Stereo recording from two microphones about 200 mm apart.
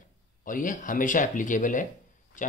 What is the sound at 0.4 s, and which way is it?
Speech, 40° left (ahead or behind).